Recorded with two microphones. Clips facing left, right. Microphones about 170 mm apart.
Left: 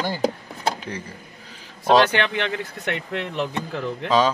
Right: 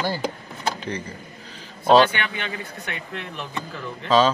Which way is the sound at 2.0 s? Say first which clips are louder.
Left 6 dB; 75° left (ahead or behind).